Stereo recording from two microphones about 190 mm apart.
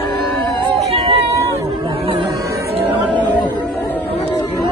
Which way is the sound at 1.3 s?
15° right (ahead or behind).